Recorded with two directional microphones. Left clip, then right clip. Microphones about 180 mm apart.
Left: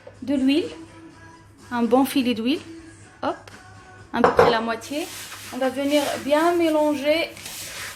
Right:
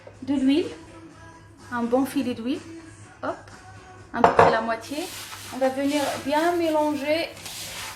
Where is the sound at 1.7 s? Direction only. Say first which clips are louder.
Left 4 dB; 55° left (ahead or behind).